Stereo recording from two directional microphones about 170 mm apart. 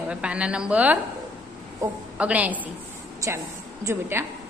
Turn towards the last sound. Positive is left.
turn(degrees=-15)  # may be behind; listen again after turning